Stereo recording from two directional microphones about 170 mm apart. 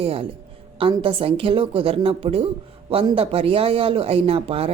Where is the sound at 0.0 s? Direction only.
35° right (ahead or behind).